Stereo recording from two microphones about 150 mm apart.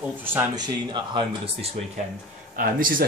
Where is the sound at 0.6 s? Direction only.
30° right (ahead or behind).